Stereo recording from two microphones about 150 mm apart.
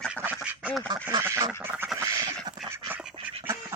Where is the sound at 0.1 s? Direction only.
10° right (ahead or behind).